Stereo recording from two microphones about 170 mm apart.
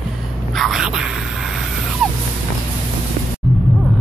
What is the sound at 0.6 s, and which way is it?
Speech, centre (ahead or behind).